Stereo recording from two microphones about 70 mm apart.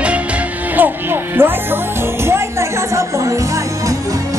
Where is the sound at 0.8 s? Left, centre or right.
Right.